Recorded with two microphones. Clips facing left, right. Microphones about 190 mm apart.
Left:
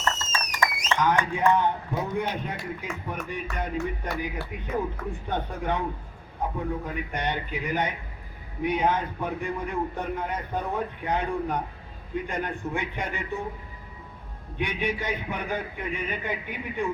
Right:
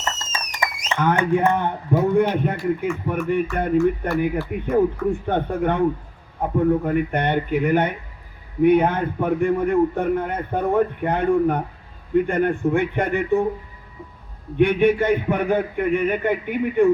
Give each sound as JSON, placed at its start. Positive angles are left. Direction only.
{"t": 0.5, "sound": "a sound", "side_deg": -20}
{"t": 1.2, "sound": "a man's voice", "side_deg": -55}
{"t": 14.6, "sound": "a man's voice", "side_deg": -55}